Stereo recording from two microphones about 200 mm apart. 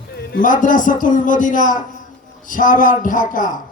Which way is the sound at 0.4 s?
40° left (ahead or behind).